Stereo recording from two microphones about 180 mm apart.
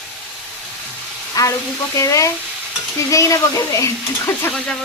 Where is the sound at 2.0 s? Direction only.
15° left (ahead or behind).